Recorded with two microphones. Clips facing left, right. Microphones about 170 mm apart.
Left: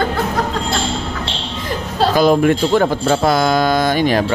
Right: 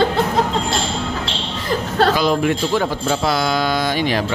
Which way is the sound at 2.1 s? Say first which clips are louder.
Left 5 dB; 50° left (ahead or behind).